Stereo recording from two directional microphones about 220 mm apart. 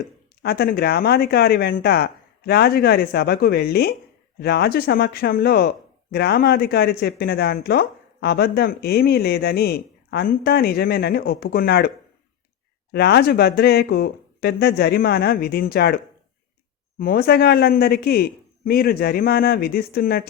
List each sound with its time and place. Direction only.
0.4 s speech: 45° left (ahead or behind)
12.9 s speech: 50° left (ahead or behind)
17.0 s speech: 45° left (ahead or behind)